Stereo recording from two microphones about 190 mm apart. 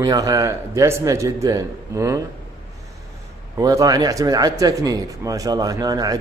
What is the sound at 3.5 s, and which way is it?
Speech, 20° right (ahead or behind).